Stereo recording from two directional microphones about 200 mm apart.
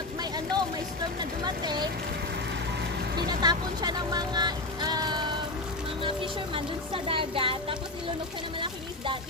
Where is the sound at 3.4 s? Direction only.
20° right (ahead or behind).